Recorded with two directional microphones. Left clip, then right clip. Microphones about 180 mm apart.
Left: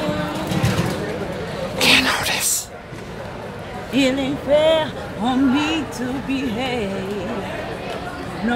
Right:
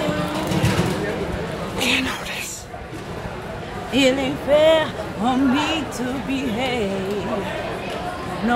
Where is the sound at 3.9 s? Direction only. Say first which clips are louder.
Right 1 dB; 5° right (ahead or behind).